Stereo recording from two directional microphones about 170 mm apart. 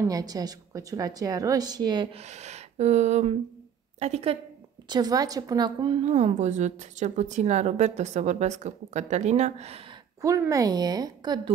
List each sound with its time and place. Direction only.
0.1 s a woman's voice: 20° right (ahead or behind)
2.1 s speech: 40° right (ahead or behind)
4.8 s a woman's voice: 25° right (ahead or behind)
10.2 s a woman's voice: 20° right (ahead or behind)